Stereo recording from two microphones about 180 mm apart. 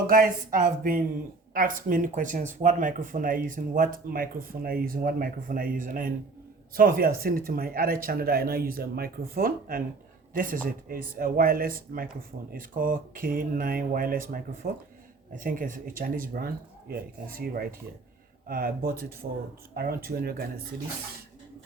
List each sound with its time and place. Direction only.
0.1 s speech: 50° right (ahead or behind)